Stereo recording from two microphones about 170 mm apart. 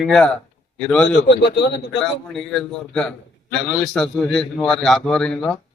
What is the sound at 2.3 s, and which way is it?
A man's voice, 5° left (ahead or behind).